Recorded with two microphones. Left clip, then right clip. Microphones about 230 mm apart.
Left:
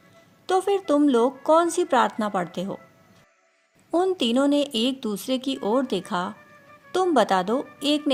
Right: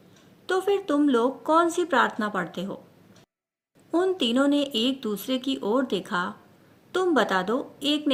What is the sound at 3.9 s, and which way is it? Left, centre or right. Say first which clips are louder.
A woman's voice: left 2 dB; left.